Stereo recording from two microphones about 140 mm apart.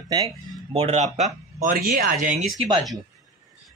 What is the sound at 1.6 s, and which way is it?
Speech, 90° right.